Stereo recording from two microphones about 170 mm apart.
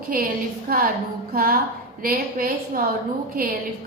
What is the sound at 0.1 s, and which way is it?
A woman's voice, 55° right (ahead or behind).